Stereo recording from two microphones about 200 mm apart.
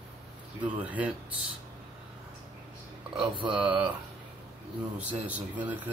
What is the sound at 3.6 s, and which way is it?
Speech, 5° right (ahead or behind).